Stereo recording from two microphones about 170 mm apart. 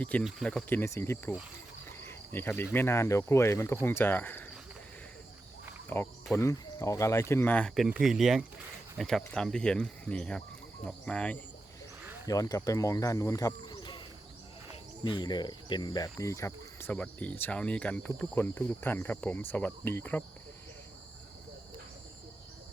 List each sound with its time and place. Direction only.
0.0 s speech: 10° left (ahead or behind)
2.0 s cricket: 15° left (ahead or behind)
2.7 s speech: 15° left (ahead or behind)
5.9 s speech: 10° left (ahead or behind)
7.9 s speech: 5° right (ahead or behind)
12.0 s wild animals: 15° right (ahead or behind)
12.3 s speech: 20° left (ahead or behind)
15.0 s speech: 25° left (ahead or behind)